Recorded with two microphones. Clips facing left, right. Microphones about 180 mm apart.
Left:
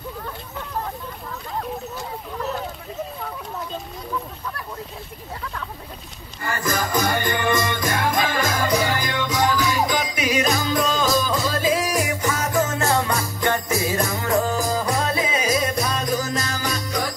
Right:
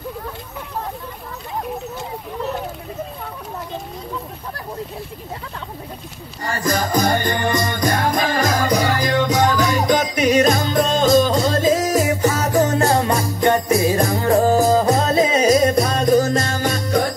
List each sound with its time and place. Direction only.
6.4 s music: 30° right (ahead or behind); by 17.0 s 50° right (ahead or behind)